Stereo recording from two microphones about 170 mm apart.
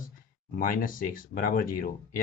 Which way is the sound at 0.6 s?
55° left (ahead or behind).